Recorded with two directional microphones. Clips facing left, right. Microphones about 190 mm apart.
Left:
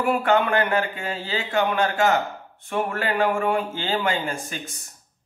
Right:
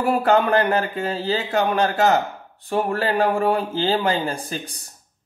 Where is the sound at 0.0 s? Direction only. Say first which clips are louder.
Right 2 dB; 35° right (ahead or behind).